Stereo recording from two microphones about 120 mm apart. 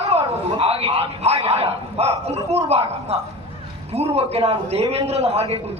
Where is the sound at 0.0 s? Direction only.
55° right (ahead or behind).